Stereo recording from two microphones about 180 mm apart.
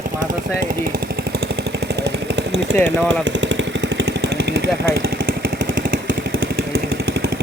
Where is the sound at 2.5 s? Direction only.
70° right (ahead or behind).